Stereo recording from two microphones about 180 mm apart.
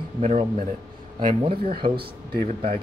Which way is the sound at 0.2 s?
40° right (ahead or behind).